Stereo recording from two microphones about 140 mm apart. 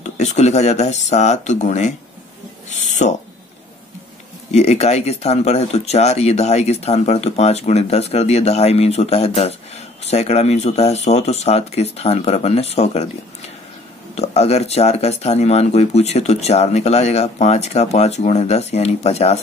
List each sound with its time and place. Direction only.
0.0 s speech: 55° left (ahead or behind)
2.7 s owl: 55° left (ahead or behind)
4.5 s speech: 50° left (ahead or behind)
14.1 s speech: 50° left (ahead or behind)